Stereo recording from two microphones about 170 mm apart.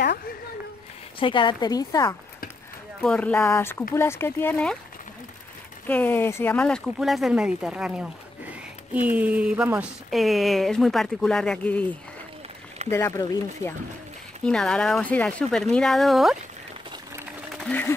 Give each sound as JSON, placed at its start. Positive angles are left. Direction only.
{"t": 1.2, "sound": "a woman's voice", "side_deg": 30}
{"t": 3.0, "sound": "speech", "side_deg": 5}
{"t": 5.9, "sound": "speech", "side_deg": 10}
{"t": 12.9, "sound": "speech", "side_deg": 15}
{"t": 14.4, "sound": "speech", "side_deg": 5}
{"t": 17.6, "sound": "speech", "side_deg": 10}